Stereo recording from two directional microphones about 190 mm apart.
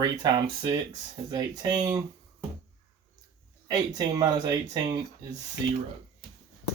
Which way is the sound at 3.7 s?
20° right (ahead or behind).